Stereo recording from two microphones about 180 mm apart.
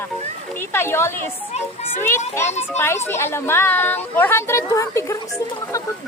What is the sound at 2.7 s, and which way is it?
Speech, 15° left (ahead or behind).